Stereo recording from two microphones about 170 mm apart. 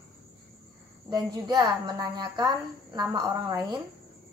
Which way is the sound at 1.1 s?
20° right (ahead or behind).